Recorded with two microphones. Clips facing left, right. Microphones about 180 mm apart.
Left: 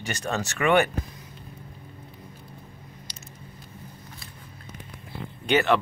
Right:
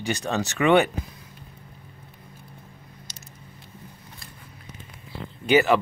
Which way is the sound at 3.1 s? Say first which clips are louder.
Left 1 dB; 45° right (ahead or behind).